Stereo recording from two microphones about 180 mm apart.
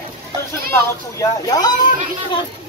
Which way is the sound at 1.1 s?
20° left (ahead or behind).